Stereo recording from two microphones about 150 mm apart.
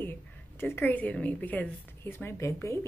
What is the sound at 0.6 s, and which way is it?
A woman's voice, 15° left (ahead or behind).